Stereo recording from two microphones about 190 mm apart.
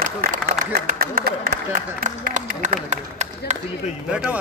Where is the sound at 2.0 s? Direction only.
40° right (ahead or behind).